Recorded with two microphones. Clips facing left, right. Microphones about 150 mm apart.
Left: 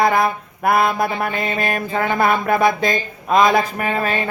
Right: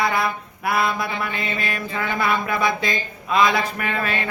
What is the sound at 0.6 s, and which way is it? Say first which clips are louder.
Mantra: left 5 dB; 50° left (ahead or behind).